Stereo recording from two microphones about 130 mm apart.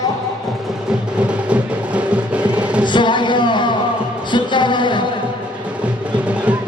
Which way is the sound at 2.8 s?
35° left (ahead or behind).